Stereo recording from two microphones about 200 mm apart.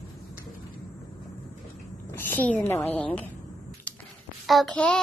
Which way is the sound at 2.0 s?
10° left (ahead or behind).